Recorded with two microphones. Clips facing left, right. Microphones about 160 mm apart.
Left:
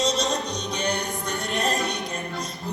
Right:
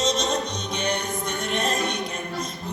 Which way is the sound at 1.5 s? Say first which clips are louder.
Even; 35° left (ahead or behind).